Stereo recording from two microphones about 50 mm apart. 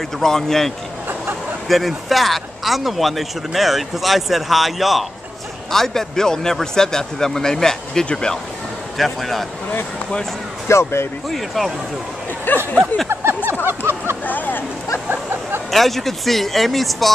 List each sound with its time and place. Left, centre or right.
0.2 s speech: centre
8.9 s speech: centre
10.7 s speech: left
11.2 s speech: centre
12.5 s speech: left
13.1 s a sound: right
14.2 s speech: left
15.7 s speech: centre